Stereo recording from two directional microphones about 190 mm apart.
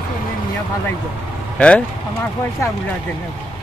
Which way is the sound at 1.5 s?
5° left (ahead or behind).